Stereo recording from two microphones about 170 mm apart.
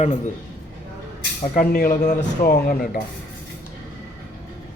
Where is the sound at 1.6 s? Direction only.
60° left (ahead or behind).